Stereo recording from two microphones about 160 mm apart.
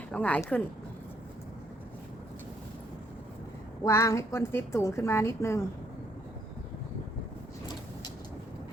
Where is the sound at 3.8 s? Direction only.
20° left (ahead or behind).